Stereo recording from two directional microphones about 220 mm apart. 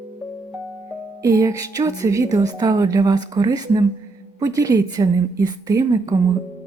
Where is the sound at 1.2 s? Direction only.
15° right (ahead or behind).